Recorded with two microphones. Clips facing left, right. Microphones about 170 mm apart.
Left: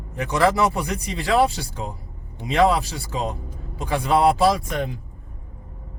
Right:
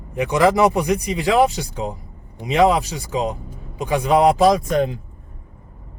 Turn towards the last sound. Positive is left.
turn(degrees=-20)  # may be behind; listen again after turning